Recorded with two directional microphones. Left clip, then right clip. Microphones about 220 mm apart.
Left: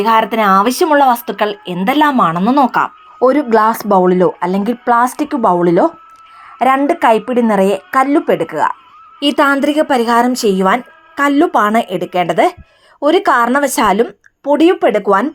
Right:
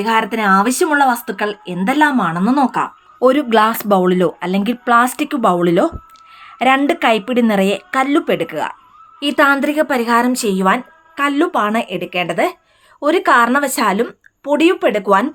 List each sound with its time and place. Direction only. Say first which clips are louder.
0.0 s a woman's voice: left 4 dB; 5° left (ahead or behind)
3.2 s speech: left 2 dB; 15° right (ahead or behind)
3.8 s a woman's voice: left 3 dB; centre (ahead or behind)
4.4 s speech: left 3 dB; 10° right (ahead or behind)
6.6 s a woman's voice: left 2 dB; centre (ahead or behind)
9.2 s a woman's voice: left 2 dB; 15° left (ahead or behind)